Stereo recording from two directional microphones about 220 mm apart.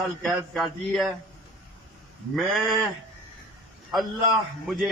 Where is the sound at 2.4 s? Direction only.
Centre (ahead or behind).